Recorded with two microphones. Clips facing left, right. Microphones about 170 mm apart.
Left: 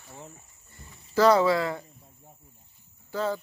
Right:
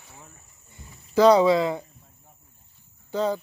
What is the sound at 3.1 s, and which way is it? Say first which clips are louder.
Speech: right 4 dB; 20° right (ahead or behind).